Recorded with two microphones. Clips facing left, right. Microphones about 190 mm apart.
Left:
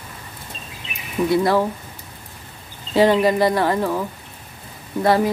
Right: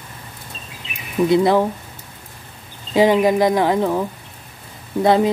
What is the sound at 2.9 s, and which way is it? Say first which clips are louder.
Speech: right 1 dB; 15° right (ahead or behind).